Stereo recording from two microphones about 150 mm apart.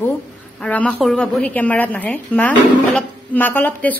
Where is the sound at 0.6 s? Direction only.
10° left (ahead or behind).